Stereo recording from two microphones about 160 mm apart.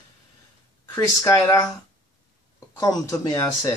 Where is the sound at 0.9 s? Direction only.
20° left (ahead or behind).